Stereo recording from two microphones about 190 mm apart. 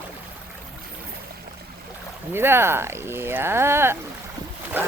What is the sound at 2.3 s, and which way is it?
Speech, 10° right (ahead or behind).